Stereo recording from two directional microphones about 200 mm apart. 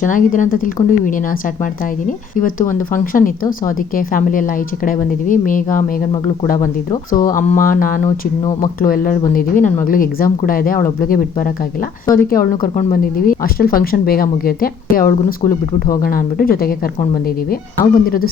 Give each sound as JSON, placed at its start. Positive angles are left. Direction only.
{"t": 0.0, "sound": "speech", "side_deg": 40}